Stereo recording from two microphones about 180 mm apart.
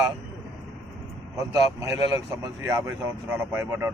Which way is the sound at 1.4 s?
15° right (ahead or behind).